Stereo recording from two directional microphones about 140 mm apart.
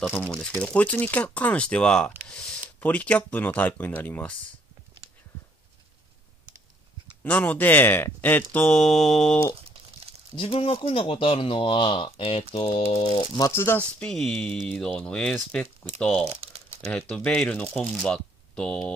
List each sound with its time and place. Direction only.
0.1 s speech: 10° left (ahead or behind)
7.2 s speech: 10° left (ahead or behind)
10.3 s speech: 40° left (ahead or behind)
13.5 s speech: 15° left (ahead or behind)
16.3 s crumpling: 45° right (ahead or behind)
16.8 s speech: 10° left (ahead or behind)